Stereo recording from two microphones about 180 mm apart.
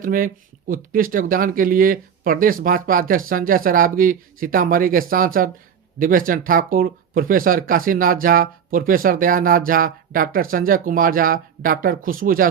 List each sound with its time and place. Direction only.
0.0 s speech: 50° right (ahead or behind)